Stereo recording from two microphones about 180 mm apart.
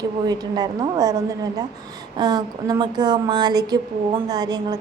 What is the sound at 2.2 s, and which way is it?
A woman's voice, 20° right (ahead or behind).